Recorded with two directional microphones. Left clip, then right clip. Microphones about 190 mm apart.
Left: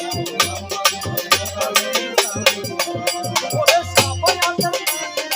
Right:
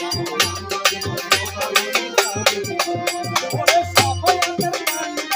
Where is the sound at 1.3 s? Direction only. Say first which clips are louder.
Left 1 dB; 10° left (ahead or behind).